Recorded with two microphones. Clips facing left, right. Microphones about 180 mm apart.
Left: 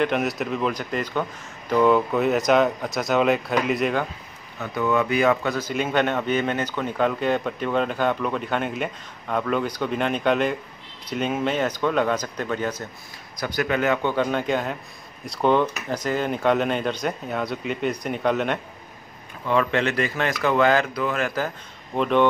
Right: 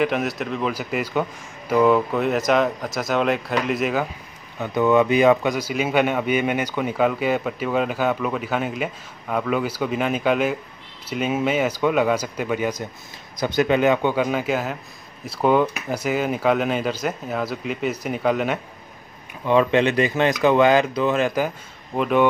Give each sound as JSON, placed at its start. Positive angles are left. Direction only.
{"t": 0.0, "sound": "speech", "side_deg": 0}
{"t": 4.6, "sound": "speech", "side_deg": -20}
{"t": 13.4, "sound": "speech", "side_deg": -20}
{"t": 19.4, "sound": "speech", "side_deg": -20}
{"t": 21.9, "sound": "speech", "side_deg": -5}